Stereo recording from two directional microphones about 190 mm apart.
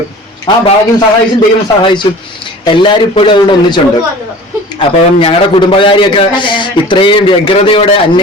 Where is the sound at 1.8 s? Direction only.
25° left (ahead or behind).